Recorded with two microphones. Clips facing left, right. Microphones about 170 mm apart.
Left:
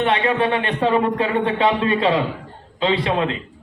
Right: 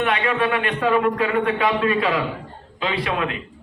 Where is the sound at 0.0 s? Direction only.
25° left (ahead or behind).